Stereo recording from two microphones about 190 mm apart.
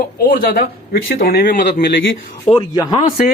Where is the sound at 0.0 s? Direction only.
45° left (ahead or behind).